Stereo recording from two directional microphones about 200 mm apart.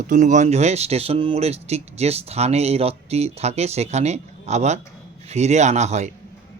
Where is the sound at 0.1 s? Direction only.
40° right (ahead or behind).